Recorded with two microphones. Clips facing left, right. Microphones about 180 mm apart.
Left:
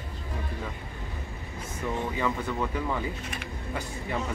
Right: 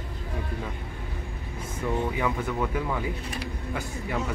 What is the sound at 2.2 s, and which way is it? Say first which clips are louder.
Speech: right 1 dB; centre (ahead or behind).